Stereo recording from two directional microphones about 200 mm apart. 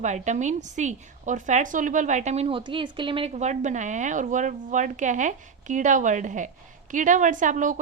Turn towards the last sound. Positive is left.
turn(degrees=-40)  # may be behind; listen again after turning